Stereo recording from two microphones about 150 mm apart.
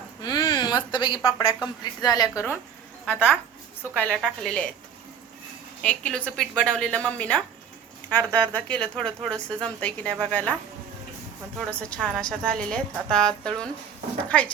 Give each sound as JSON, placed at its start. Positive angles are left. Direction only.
{"t": 0.2, "sound": "a woman's voice", "side_deg": 30}
{"t": 5.8, "sound": "speech", "side_deg": 10}
{"t": 11.6, "sound": "a woman's voice", "side_deg": 5}